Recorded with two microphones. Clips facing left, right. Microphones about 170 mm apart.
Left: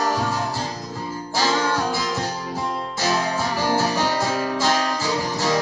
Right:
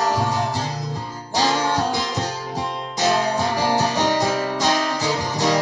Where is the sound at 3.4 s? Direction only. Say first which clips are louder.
Right 2 dB; 20° right (ahead or behind).